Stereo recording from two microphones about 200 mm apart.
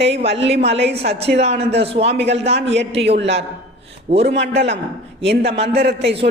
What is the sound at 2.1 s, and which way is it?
A woman's voice, 60° right (ahead or behind).